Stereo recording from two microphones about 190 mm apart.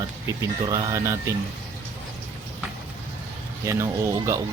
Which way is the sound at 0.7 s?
15° right (ahead or behind).